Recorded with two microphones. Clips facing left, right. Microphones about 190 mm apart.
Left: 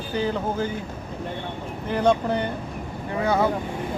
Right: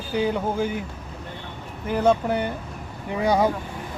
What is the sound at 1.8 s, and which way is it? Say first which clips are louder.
Speech: right 1 dB; 5° right (ahead or behind).